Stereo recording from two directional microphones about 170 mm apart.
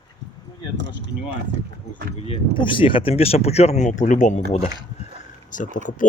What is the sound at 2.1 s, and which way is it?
Speech, 35° left (ahead or behind).